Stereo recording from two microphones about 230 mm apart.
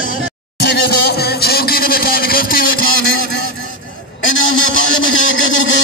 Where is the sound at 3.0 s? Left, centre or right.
Left.